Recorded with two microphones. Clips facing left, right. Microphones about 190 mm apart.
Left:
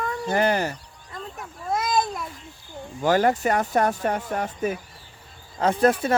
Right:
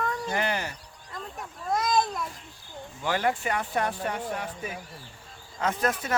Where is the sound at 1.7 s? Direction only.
5° left (ahead or behind).